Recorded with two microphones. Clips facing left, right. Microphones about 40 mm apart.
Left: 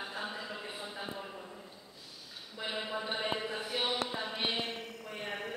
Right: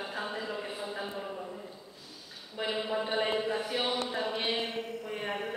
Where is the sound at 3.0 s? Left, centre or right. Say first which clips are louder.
Right 6 dB; right.